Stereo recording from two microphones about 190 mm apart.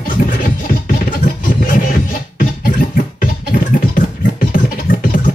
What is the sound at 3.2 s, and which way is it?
Scratching, 45° left (ahead or behind).